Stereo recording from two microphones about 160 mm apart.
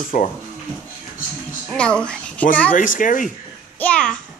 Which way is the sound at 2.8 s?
55° left (ahead or behind).